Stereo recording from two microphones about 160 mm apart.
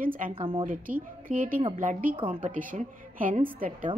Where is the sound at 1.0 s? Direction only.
55° right (ahead or behind).